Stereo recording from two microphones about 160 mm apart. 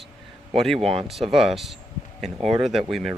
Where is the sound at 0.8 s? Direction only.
35° right (ahead or behind).